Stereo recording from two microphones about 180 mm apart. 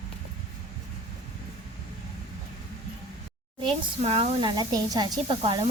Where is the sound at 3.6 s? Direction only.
30° right (ahead or behind).